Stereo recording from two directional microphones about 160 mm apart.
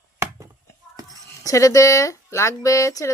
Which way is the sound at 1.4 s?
20° left (ahead or behind).